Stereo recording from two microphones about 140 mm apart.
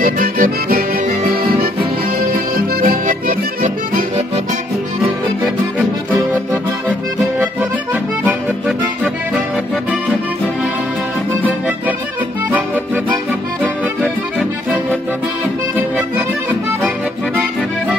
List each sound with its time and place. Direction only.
0.0 s accordion: 75° right (ahead or behind)
1.8 s music: 90° right; by 4.0 s 70° right (ahead or behind)
7.9 s accordion: 15° right (ahead or behind)
8.6 s music: 10° right (ahead or behind)
12.4 s music: 15° right (ahead or behind)
15.7 s accordion: 5° right (ahead or behind)